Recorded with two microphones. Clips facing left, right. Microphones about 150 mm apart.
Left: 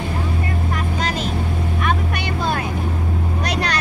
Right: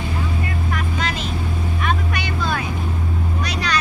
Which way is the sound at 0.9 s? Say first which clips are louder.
Left 3 dB; 40° left (ahead or behind).